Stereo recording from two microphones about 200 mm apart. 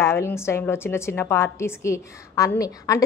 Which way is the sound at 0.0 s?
15° left (ahead or behind).